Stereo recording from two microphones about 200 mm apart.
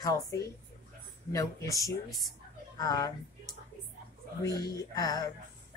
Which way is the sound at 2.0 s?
Centre (ahead or behind).